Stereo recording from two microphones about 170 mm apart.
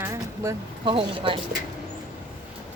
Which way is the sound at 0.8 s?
30° right (ahead or behind).